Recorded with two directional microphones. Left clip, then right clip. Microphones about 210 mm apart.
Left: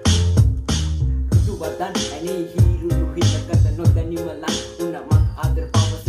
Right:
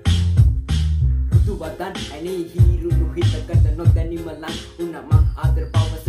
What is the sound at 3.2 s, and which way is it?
Music, 50° left (ahead or behind).